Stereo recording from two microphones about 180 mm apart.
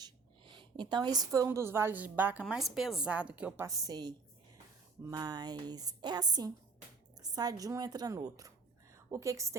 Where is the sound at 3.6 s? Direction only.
20° right (ahead or behind).